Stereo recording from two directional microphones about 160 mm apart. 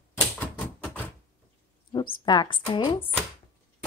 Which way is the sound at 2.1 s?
25° left (ahead or behind).